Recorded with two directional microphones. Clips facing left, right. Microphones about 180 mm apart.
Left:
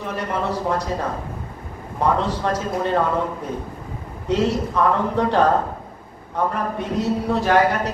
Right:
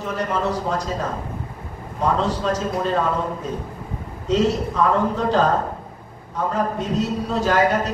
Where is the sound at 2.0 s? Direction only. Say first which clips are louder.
Left 1 dB; 65° left (ahead or behind).